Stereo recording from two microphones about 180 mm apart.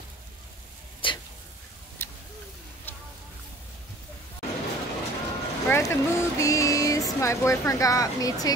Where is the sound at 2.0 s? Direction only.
10° left (ahead or behind).